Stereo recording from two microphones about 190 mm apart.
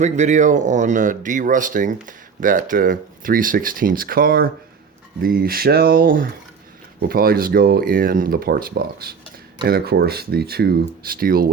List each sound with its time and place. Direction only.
0.0 s speech: 40° right (ahead or behind)